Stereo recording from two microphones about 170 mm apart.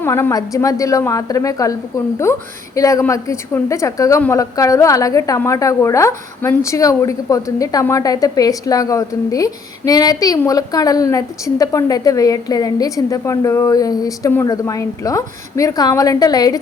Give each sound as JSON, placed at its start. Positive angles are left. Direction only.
{"t": 0.0, "sound": "a woman's voice", "side_deg": 15}